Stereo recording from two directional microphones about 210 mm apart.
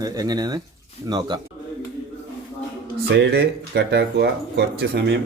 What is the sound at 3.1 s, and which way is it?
Speech, 55° right (ahead or behind).